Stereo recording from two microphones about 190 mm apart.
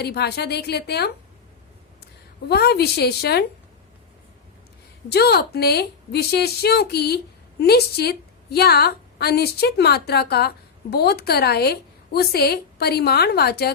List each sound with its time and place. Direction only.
0.0 s a woman's voice: 60° left (ahead or behind)
2.5 s a woman's voice: 60° left (ahead or behind)
5.0 s a woman's voice: 60° left (ahead or behind)